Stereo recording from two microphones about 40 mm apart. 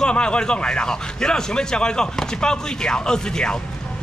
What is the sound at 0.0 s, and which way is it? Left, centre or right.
A man's voice, left.